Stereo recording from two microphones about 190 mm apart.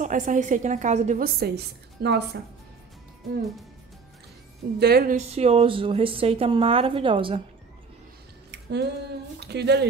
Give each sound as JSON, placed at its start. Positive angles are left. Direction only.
{"t": 0.0, "sound": "a woman's voice", "side_deg": -40}
{"t": 1.4, "sound": "a woman's voice", "side_deg": -60}
{"t": 4.7, "sound": "a woman's voice", "side_deg": -55}
{"t": 5.1, "sound": "a woman's voice", "side_deg": -35}
{"t": 8.5, "sound": "a sound", "side_deg": -60}
{"t": 9.4, "sound": "a woman's voice", "side_deg": -60}